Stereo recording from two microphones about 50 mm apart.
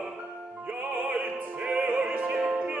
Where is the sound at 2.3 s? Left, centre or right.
Right.